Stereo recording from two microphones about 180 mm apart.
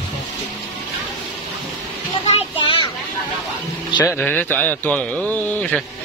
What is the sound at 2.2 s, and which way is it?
Children playing, 35° left (ahead or behind).